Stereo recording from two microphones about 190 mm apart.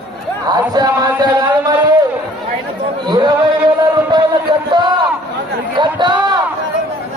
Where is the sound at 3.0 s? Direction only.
20° right (ahead or behind).